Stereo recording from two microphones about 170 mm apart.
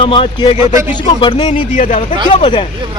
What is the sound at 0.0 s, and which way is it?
Speech, 30° left (ahead or behind).